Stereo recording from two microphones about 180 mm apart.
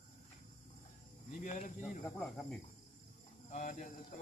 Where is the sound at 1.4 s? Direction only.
45° left (ahead or behind).